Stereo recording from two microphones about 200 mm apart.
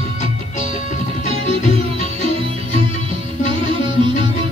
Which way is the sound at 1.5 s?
30° right (ahead or behind).